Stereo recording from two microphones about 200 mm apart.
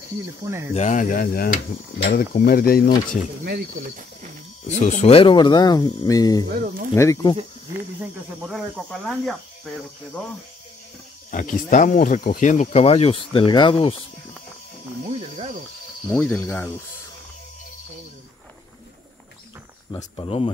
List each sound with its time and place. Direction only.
0.7 s speech: 35° left (ahead or behind)
3.4 s speech: 50° right (ahead or behind)
4.6 s speech: 35° left (ahead or behind)
6.6 s speech: 45° right (ahead or behind)
7.0 s speech: 15° left (ahead or behind)
8.4 s speech: 5° right (ahead or behind)
11.2 s speech: 40° left (ahead or behind)
15.0 s music: 30° right (ahead or behind)
16.1 s speech: 5° left (ahead or behind)
19.9 s speech: 20° left (ahead or behind)
20.2 s speech: 30° left (ahead or behind)